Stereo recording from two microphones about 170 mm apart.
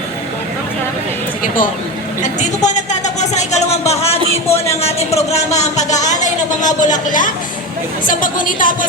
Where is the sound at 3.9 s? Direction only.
40° left (ahead or behind).